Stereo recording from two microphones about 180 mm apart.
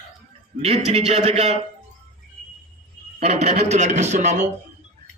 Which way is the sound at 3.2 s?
40° right (ahead or behind).